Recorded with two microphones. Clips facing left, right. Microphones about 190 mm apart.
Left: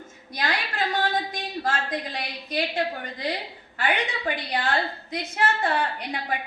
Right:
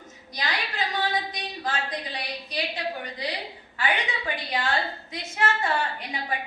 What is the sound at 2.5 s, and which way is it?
Speech, 50° left (ahead or behind).